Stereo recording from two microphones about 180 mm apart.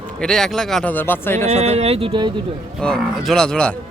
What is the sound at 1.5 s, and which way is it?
Speech, 35° right (ahead or behind).